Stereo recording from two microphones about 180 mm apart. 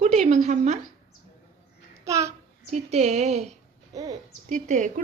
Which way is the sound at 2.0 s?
15° right (ahead or behind).